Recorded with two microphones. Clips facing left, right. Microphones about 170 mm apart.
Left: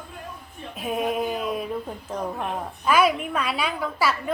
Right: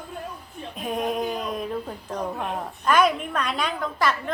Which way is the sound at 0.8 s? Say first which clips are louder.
Left 1 dB; 5° left (ahead or behind).